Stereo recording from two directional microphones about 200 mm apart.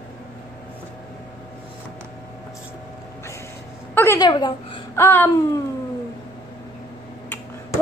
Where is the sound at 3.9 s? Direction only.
10° left (ahead or behind).